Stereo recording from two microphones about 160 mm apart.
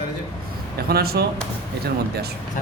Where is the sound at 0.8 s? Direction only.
75° right (ahead or behind).